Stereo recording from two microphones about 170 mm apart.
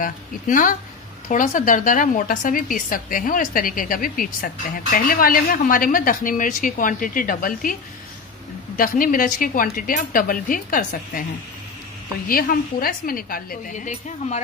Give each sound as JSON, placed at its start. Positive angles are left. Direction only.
{"t": 0.0, "sound": "a woman's voice", "side_deg": 50}
{"t": 8.7, "sound": "speech", "side_deg": 55}
{"t": 12.3, "sound": "speech", "side_deg": 60}